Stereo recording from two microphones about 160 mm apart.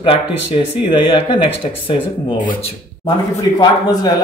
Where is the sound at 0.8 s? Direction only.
35° left (ahead or behind).